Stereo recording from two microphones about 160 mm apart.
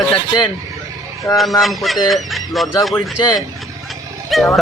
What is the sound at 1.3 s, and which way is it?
Speech, centre (ahead or behind).